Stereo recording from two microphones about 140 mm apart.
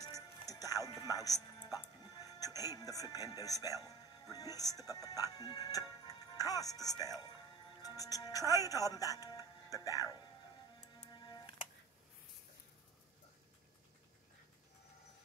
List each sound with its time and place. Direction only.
0.0 s music: 25° left (ahead or behind)
4.3 s speech: 25° left (ahead or behind)
11.1 s music: 30° left (ahead or behind)